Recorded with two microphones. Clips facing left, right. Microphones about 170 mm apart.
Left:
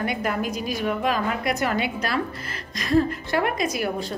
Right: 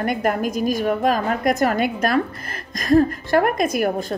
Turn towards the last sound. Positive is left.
turn(degrees=-50)  # may be behind; listen again after turning